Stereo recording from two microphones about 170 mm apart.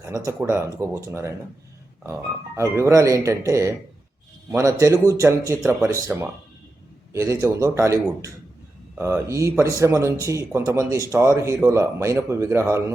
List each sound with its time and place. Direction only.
0.0 s speech: 15° right (ahead or behind)
2.6 s speech: 15° right (ahead or behind)